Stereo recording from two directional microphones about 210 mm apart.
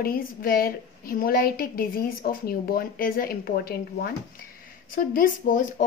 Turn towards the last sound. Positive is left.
turn(degrees=40)  # may be behind; listen again after turning